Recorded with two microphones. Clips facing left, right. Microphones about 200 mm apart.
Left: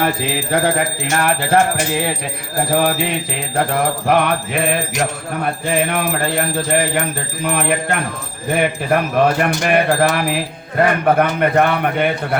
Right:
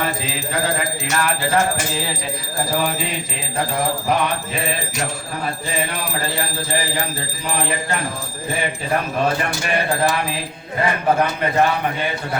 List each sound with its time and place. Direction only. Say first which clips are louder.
0.0 s speech: left 5 dB; 60° left (ahead or behind)
3.7 s speech: left 3 dB; 60° left (ahead or behind)